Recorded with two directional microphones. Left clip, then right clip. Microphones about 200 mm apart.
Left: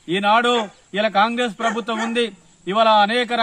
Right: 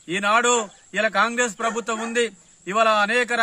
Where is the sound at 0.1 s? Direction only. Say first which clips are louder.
Left 3 dB; 10° right (ahead or behind).